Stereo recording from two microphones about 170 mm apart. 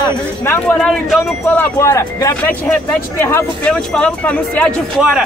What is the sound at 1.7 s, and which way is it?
Speech, 20° left (ahead or behind).